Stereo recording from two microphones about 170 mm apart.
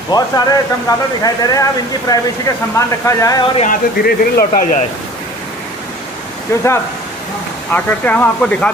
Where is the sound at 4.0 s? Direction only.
60° left (ahead or behind).